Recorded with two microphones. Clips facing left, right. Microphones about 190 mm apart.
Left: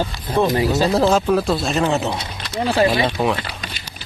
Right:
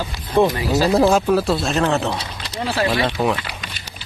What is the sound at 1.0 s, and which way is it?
Speech, 5° right (ahead or behind).